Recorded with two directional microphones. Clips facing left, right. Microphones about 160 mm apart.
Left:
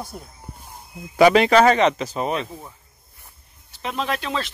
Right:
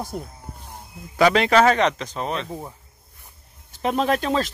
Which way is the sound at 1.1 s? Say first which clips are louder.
Left 3 dB; 10° left (ahead or behind).